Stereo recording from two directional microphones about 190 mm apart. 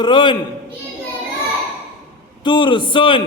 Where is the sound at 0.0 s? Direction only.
25° left (ahead or behind).